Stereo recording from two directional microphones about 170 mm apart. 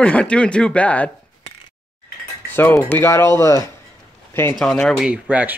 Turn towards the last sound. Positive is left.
turn(degrees=-10)  # may be behind; listen again after turning